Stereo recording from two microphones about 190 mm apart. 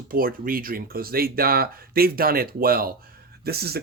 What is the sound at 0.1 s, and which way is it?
Speech, 50° right (ahead or behind).